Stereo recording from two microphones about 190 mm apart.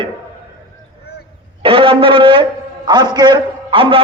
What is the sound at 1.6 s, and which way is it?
A man's voice, 30° right (ahead or behind).